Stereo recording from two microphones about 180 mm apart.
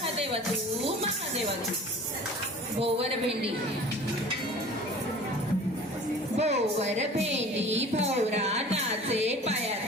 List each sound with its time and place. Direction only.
2.8 s a woman's voice: 30° right (ahead or behind)
6.3 s a woman's voice: 35° right (ahead or behind)